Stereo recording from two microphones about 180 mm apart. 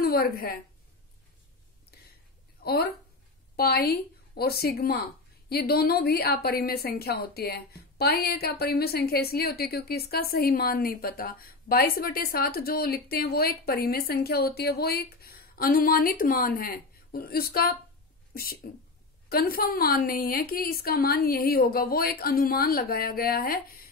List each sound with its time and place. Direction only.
0.0 s a woman's voice: 55° left (ahead or behind)
2.6 s a woman's voice: 60° left (ahead or behind)